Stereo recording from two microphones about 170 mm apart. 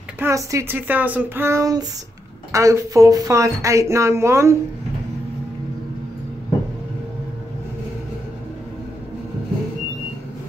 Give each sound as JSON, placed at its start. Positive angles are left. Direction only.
{"t": 0.2, "sound": "speech", "side_deg": -15}